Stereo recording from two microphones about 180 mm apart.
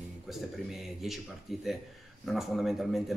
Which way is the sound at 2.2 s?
Centre (ahead or behind).